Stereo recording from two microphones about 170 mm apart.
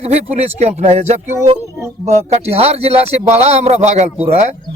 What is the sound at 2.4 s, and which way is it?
A man's voice, 35° right (ahead or behind).